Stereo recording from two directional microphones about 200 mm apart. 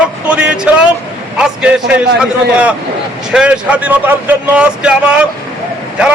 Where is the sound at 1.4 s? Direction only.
5° right (ahead or behind).